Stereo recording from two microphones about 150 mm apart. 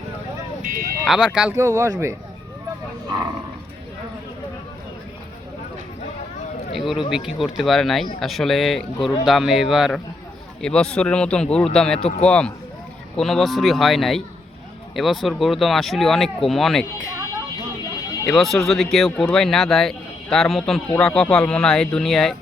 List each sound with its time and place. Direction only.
0.6 s a sound: 70° right (ahead or behind)
1.0 s speech: 5° right (ahead or behind)
1.5 s speech: 20° right (ahead or behind)
3.1 s roaring cats: 30° right (ahead or behind)
6.7 s a sound: centre (ahead or behind)
7.1 s a man's voice: 5° right (ahead or behind)
18.3 s speech: centre (ahead or behind)